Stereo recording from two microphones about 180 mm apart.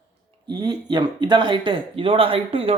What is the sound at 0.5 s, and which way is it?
Speech, 20° right (ahead or behind).